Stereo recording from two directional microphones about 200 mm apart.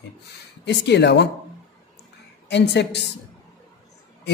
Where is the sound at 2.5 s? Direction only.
60° left (ahead or behind).